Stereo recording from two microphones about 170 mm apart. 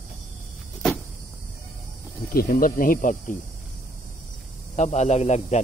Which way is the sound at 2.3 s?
60° left (ahead or behind).